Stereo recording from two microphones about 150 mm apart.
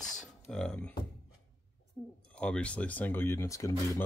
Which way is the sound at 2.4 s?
5° left (ahead or behind).